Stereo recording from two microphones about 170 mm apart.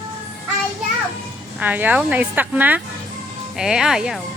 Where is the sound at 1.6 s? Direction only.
10° right (ahead or behind).